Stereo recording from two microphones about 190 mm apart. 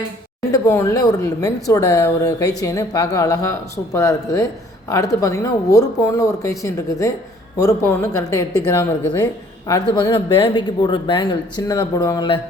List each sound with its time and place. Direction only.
0.5 s a woman's voice: 15° left (ahead or behind)